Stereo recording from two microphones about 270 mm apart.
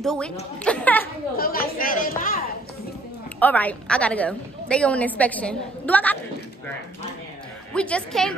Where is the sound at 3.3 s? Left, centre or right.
Centre.